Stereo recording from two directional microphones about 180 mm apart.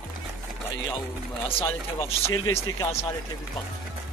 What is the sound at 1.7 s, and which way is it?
Speech, 15° left (ahead or behind).